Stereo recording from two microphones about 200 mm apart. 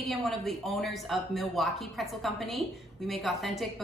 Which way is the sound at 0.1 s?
Centre (ahead or behind).